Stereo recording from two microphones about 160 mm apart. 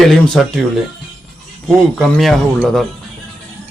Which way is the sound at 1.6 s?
Centre (ahead or behind).